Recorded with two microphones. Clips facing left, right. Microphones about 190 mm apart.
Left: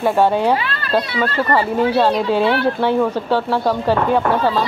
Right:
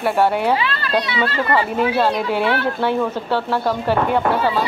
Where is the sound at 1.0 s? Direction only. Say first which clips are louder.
Left 1 dB; 45° left (ahead or behind).